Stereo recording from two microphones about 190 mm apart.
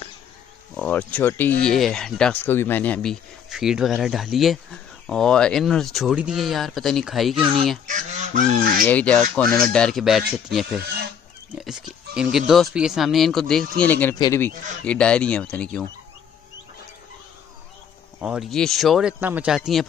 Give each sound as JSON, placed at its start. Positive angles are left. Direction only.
{"t": 0.7, "sound": "speech", "side_deg": 5}
{"t": 7.3, "sound": "speech", "side_deg": -25}
{"t": 7.8, "sound": "goose", "side_deg": -40}
{"t": 8.8, "sound": "speech", "side_deg": 5}
{"t": 10.8, "sound": "goose", "side_deg": -55}
{"t": 12.2, "sound": "speech", "side_deg": 0}
{"t": 14.1, "sound": "speech", "side_deg": 20}
{"t": 14.9, "sound": "speech", "side_deg": 5}
{"t": 18.2, "sound": "speech", "side_deg": -5}